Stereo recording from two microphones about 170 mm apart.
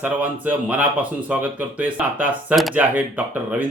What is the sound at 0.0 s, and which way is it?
Speech, 10° right (ahead or behind).